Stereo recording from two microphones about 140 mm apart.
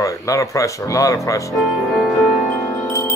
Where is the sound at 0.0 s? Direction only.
25° left (ahead or behind).